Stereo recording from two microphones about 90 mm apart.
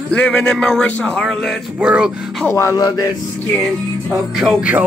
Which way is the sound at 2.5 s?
35° left (ahead or behind).